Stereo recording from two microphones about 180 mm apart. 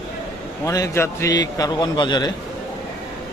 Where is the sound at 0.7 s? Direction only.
15° left (ahead or behind).